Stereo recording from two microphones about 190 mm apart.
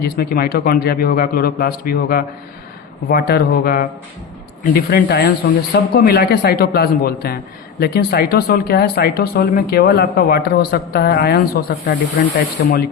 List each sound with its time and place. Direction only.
0.0 s speech: 55° left (ahead or behind)